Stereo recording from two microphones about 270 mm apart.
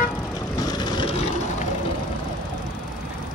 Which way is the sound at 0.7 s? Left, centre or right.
Centre.